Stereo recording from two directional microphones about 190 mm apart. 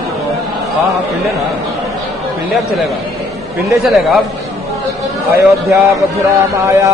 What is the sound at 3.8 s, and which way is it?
Speech, centre (ahead or behind).